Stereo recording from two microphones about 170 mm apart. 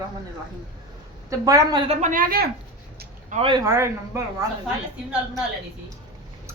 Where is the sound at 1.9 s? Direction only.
45° right (ahead or behind).